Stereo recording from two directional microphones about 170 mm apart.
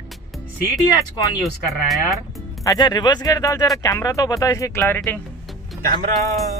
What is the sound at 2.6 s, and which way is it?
Speech, 20° left (ahead or behind).